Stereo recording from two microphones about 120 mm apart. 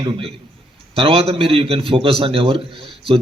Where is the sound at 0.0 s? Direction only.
45° right (ahead or behind).